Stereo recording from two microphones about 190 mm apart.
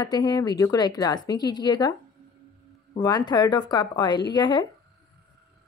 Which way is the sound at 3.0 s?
20° left (ahead or behind).